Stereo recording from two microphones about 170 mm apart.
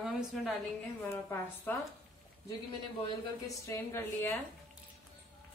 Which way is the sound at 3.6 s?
15° left (ahead or behind).